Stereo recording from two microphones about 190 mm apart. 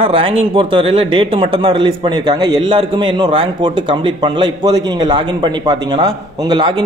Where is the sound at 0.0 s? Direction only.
30° right (ahead or behind).